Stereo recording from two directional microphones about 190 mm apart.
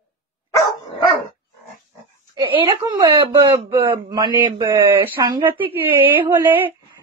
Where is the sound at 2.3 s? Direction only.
25° right (ahead or behind).